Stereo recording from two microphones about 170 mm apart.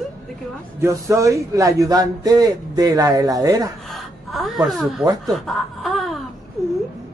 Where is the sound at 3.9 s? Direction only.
Centre (ahead or behind).